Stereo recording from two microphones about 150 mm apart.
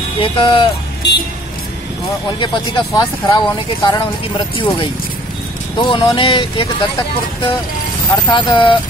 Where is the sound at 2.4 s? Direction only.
30° left (ahead or behind).